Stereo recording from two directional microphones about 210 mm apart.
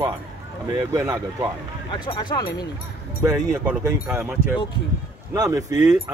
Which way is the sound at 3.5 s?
5° right (ahead or behind).